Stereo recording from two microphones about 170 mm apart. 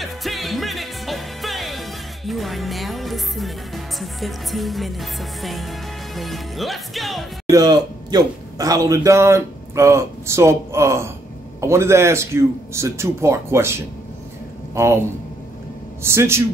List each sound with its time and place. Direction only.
0.0 s music: centre (ahead or behind)
7.4 s a man's voice: 20° right (ahead or behind)
16.0 s a man's voice: 15° right (ahead or behind)